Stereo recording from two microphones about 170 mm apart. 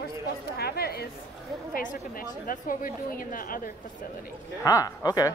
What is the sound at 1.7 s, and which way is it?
A woman's voice, 55° left (ahead or behind).